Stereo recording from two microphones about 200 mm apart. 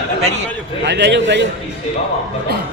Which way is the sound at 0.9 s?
60° right (ahead or behind).